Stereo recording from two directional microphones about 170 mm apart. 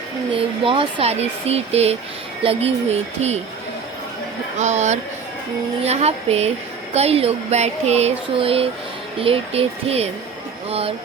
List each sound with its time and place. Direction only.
0.3 s speech: 30° right (ahead or behind)
4.5 s speech: 45° right (ahead or behind)